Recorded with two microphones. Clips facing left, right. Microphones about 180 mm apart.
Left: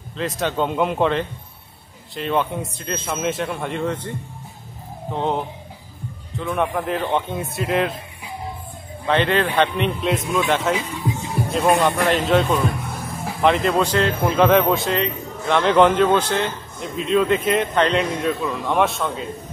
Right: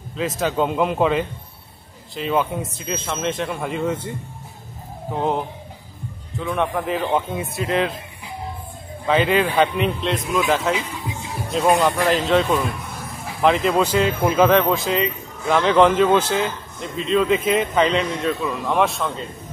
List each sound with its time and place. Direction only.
0.4 s speech: 5° right (ahead or behind)
5.1 s speech: 5° right (ahead or behind)
9.0 s speech: 5° right (ahead or behind)
11.1 s music: 40° left (ahead or behind)
11.5 s speech: centre (ahead or behind)